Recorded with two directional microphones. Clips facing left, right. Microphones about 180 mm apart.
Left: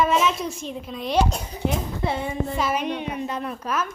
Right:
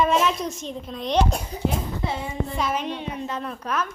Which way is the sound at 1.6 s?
60° left (ahead or behind).